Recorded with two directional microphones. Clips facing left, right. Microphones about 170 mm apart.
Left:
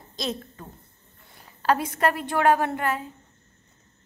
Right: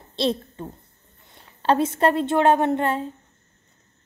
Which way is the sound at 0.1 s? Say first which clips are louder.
Right 8 dB; 30° right (ahead or behind).